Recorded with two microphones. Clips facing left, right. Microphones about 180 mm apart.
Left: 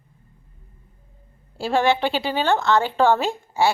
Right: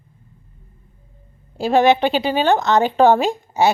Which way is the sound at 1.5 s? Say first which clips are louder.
Right 5 dB; 20° right (ahead or behind).